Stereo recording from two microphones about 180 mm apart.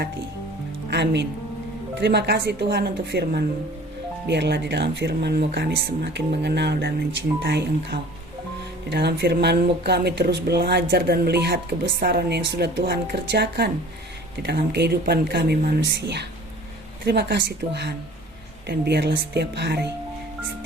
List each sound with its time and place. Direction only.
0.9 s speech: 70° right (ahead or behind)
17.6 s speech: 55° right (ahead or behind)
18.6 s speech: 65° right (ahead or behind)